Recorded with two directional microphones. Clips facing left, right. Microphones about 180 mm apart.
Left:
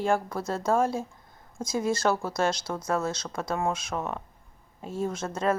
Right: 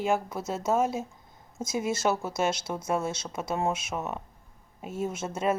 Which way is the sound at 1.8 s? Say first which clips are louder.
Left 2 dB; 10° right (ahead or behind).